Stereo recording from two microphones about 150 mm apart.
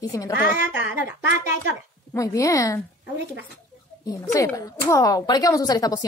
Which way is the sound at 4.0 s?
25° left (ahead or behind).